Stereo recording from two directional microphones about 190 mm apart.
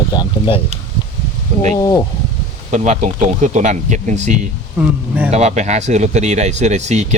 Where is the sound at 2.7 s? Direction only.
40° right (ahead or behind).